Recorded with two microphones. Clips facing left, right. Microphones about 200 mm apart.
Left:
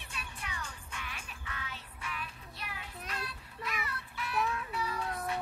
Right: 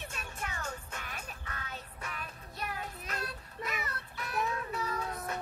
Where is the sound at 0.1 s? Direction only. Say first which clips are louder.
Right 3 dB; 45° right (ahead or behind).